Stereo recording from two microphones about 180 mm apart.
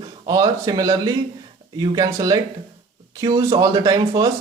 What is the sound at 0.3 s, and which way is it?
A man's voice, 20° right (ahead or behind).